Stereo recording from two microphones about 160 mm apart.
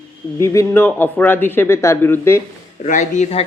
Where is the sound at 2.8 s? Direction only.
50° left (ahead or behind).